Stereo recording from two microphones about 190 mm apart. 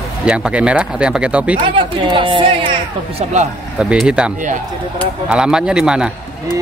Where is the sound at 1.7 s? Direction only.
25° right (ahead or behind).